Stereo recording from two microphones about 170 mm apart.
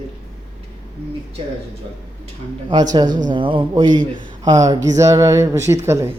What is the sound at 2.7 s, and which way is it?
Speech, 25° right (ahead or behind).